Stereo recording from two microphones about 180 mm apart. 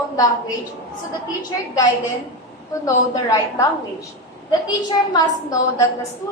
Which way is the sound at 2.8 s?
15° left (ahead or behind).